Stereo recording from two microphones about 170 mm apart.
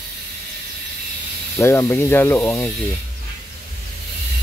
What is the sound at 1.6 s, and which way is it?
Speech, 15° left (ahead or behind).